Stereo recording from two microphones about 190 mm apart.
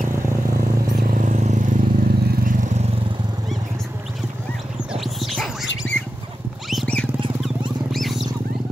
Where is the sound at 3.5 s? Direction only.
Centre (ahead or behind).